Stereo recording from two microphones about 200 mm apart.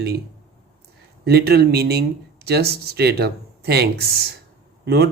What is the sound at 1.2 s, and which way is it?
Speech, 55° right (ahead or behind).